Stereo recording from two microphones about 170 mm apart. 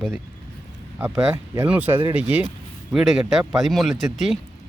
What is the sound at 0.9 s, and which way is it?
Speech, 5° right (ahead or behind).